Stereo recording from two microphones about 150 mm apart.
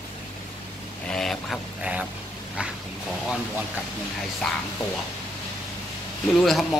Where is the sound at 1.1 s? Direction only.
5° left (ahead or behind).